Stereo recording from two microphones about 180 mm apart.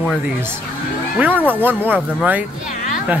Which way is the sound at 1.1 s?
10° right (ahead or behind).